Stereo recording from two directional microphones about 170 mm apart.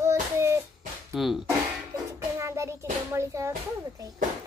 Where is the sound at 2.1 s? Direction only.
15° right (ahead or behind).